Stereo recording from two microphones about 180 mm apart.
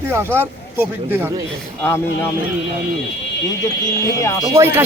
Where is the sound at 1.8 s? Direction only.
15° left (ahead or behind).